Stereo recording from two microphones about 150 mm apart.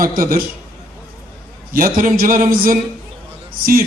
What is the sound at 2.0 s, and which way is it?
Speech, 70° right (ahead or behind).